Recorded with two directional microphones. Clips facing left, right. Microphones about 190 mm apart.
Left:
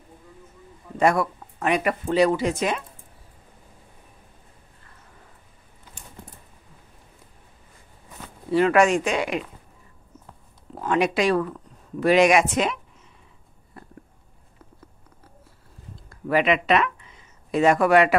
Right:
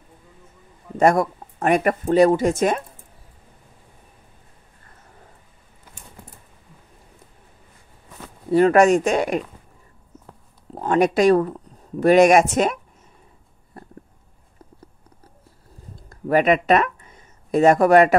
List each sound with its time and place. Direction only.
0.9 s speech: 45° right (ahead or behind)
8.5 s speech: 40° right (ahead or behind)
10.7 s speech: 40° right (ahead or behind)
16.1 s speech: 45° right (ahead or behind)